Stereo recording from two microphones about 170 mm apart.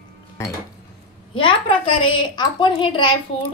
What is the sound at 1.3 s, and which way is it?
A woman's voice, 30° left (ahead or behind).